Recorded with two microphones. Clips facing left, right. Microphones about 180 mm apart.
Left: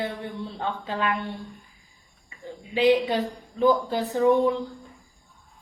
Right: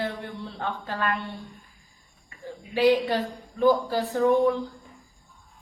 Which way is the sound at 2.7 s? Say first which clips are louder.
Left 1 dB; 20° left (ahead or behind).